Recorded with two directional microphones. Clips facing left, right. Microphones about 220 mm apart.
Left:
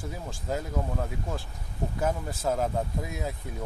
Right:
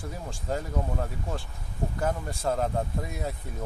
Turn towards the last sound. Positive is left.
turn(degrees=0)  # may be behind; listen again after turning